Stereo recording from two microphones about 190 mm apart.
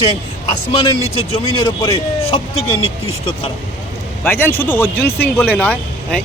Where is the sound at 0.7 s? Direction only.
30° left (ahead or behind).